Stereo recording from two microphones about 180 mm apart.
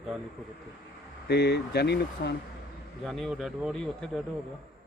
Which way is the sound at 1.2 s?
65° left (ahead or behind).